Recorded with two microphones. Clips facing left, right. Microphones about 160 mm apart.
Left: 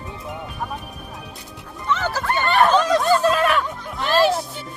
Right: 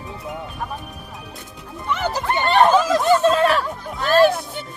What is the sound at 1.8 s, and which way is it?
Music, 15° right (ahead or behind).